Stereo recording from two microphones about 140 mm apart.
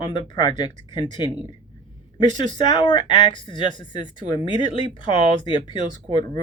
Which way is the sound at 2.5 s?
35° left (ahead or behind).